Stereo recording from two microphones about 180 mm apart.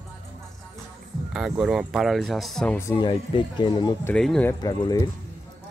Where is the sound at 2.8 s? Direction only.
20° left (ahead or behind).